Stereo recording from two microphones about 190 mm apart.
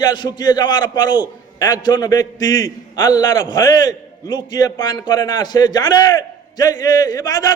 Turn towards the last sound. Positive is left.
turn(degrees=20)  # may be behind; listen again after turning